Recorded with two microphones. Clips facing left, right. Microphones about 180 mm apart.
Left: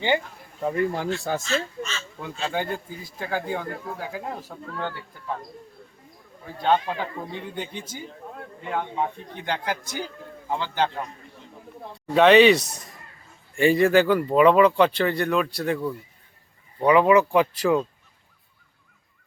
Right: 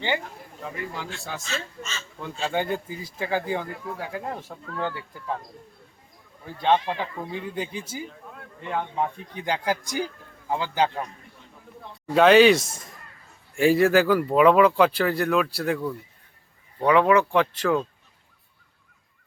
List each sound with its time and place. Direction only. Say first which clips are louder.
0.6 s speech: left 10 dB; 45° left (ahead or behind)
2.2 s speech: right 1 dB; 5° left (ahead or behind)
6.4 s speech: even; centre (ahead or behind)
9.5 s speech: right 2 dB; 10° right (ahead or behind)
12.0 s speech: even; centre (ahead or behind)
12.6 s speech: left 1 dB; 25° right (ahead or behind)
13.6 s speech: even; centre (ahead or behind)